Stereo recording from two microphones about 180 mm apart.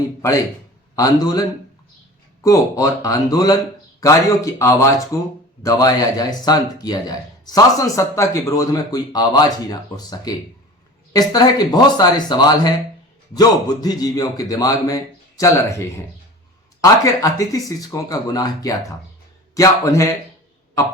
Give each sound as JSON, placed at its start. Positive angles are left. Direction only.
{"t": 0.2, "sound": "speech", "side_deg": 20}
{"t": 16.8, "sound": "speech", "side_deg": 20}